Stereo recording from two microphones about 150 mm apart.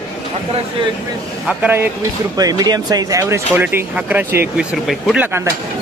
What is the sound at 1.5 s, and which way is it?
Speech, 10° right (ahead or behind).